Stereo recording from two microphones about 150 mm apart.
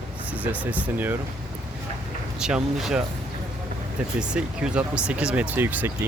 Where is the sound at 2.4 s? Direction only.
5° right (ahead or behind).